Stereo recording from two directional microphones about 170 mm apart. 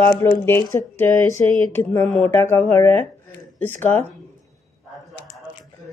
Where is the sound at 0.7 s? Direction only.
15° left (ahead or behind).